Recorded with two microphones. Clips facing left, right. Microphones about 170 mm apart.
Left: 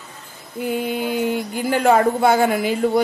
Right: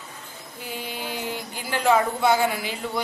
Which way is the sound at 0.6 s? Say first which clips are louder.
Left 12 dB; 55° left (ahead or behind).